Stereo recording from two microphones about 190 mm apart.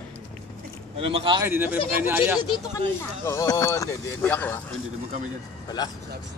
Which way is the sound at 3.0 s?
15° left (ahead or behind).